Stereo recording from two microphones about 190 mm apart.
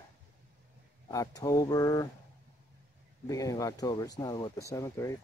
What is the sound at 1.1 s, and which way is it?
Speech, 20° left (ahead or behind).